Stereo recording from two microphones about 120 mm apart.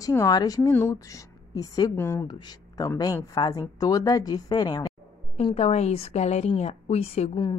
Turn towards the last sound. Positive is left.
turn(degrees=60)  # may be behind; listen again after turning